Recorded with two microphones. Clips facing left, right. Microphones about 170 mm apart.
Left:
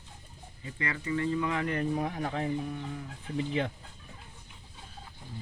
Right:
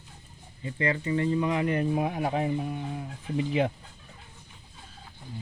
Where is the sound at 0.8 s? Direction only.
25° right (ahead or behind).